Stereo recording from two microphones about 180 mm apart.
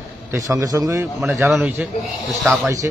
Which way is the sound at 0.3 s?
15° right (ahead or behind).